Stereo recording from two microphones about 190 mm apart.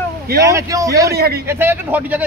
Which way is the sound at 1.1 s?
55° right (ahead or behind).